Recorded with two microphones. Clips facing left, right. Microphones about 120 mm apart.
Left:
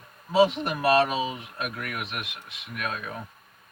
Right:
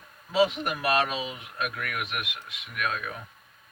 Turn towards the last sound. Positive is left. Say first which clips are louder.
# right 1 dB
turn(degrees=30)  # may be behind; listen again after turning